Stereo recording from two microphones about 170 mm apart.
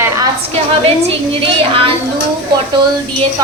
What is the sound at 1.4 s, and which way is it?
Speech, 30° right (ahead or behind).